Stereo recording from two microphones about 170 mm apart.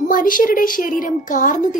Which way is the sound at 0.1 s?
55° left (ahead or behind).